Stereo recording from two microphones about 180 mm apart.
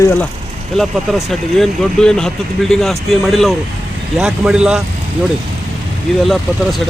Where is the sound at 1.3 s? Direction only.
Centre (ahead or behind).